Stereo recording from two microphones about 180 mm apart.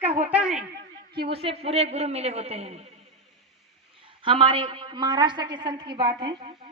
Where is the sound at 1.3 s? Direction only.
35° right (ahead or behind).